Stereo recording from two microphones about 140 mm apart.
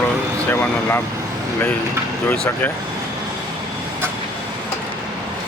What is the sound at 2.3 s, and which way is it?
Speech, 5° left (ahead or behind).